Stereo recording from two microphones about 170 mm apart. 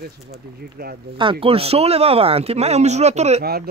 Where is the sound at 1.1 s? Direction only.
30° right (ahead or behind).